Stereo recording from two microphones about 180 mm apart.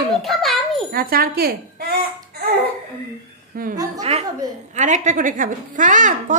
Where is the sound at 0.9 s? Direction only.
55° right (ahead or behind).